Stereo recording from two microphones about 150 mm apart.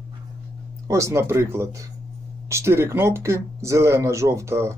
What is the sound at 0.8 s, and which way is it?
Speech, 20° right (ahead or behind).